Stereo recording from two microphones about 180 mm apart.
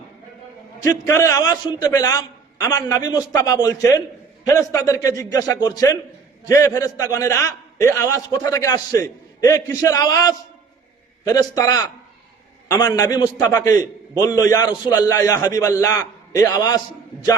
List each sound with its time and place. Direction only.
0.8 s a man's voice: 15° left (ahead or behind)